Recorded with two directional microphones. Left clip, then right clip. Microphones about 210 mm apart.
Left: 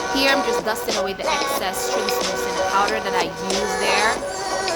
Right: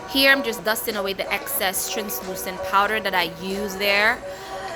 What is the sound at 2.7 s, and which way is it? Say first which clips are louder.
Speech: right 3 dB; 15° right (ahead or behind).